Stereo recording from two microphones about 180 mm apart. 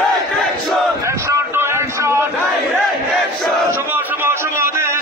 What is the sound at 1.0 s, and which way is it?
A man's voice, 15° right (ahead or behind).